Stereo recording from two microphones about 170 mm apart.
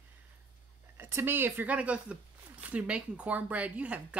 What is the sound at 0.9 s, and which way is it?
Speech, 15° right (ahead or behind).